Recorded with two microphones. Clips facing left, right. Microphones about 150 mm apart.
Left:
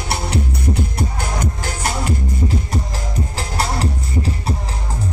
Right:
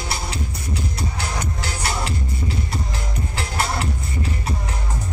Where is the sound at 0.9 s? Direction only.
50° left (ahead or behind).